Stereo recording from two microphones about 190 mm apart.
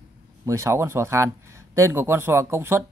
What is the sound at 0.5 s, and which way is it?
Speech, 15° right (ahead or behind).